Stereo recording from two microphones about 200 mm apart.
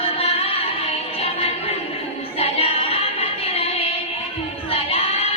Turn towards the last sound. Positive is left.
turn(degrees=30)  # may be behind; listen again after turning